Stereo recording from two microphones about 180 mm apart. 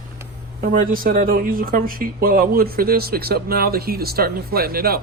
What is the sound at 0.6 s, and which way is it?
Speech, 50° right (ahead or behind).